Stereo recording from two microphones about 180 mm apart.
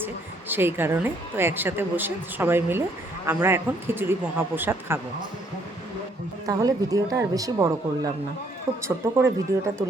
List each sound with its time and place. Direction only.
0.0 s a woman's voice: 10° right (ahead or behind)
6.4 s a woman's voice: 20° right (ahead or behind)